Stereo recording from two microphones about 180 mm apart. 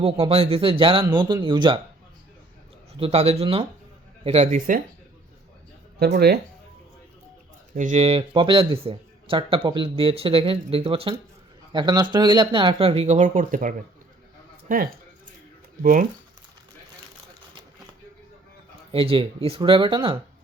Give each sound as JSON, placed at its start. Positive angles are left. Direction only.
{"t": 0.0, "sound": "speech", "side_deg": -35}
{"t": 3.0, "sound": "speech", "side_deg": -35}
{"t": 6.0, "sound": "speech", "side_deg": -65}
{"t": 7.8, "sound": "speech", "side_deg": -40}
{"t": 18.9, "sound": "speech", "side_deg": -30}